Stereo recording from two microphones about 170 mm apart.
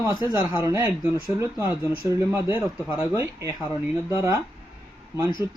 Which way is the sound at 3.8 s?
15° right (ahead or behind).